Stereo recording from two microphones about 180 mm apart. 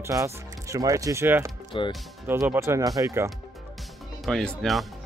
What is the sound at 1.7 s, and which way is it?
Speech, 30° left (ahead or behind).